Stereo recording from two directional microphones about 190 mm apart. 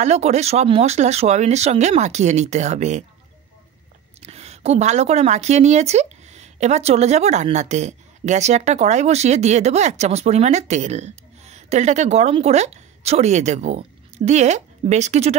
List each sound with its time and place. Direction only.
0.0 s speech: 35° right (ahead or behind)
4.2 s a woman's voice: 35° right (ahead or behind)